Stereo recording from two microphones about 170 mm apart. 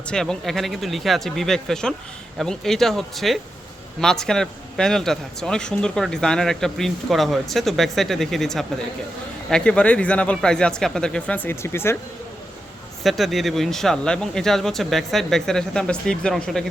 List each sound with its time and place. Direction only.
0.1 s a man's voice: 5° left (ahead or behind)
13.0 s a man's voice: centre (ahead or behind)